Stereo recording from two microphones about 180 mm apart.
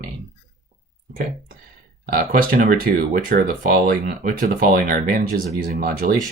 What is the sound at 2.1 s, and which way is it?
Speech, 50° right (ahead or behind).